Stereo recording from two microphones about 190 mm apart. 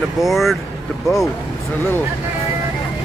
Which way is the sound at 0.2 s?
Centre (ahead or behind).